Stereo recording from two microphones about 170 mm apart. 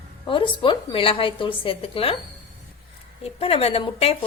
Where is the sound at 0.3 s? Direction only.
30° left (ahead or behind).